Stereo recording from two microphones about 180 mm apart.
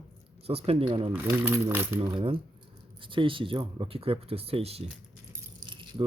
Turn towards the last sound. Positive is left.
turn(degrees=-25)  # may be behind; listen again after turning